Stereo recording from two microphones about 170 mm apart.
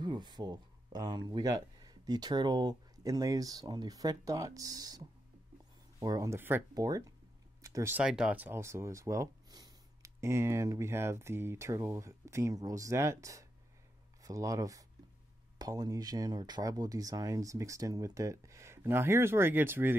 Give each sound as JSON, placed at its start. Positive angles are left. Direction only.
{"t": 0.0, "sound": "speech", "side_deg": -25}
{"t": 8.0, "sound": "speech", "side_deg": -5}